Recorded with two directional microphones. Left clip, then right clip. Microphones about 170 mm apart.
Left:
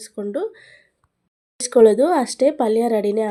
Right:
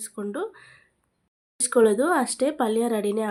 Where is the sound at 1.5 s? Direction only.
15° left (ahead or behind).